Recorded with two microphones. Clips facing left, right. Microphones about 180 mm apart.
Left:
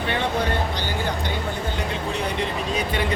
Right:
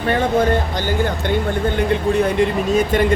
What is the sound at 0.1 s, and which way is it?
Speech, 45° right (ahead or behind).